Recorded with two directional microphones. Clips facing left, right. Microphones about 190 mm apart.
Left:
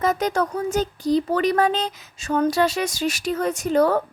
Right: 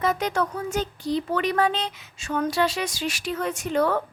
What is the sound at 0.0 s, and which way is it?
Speech, 40° left (ahead or behind).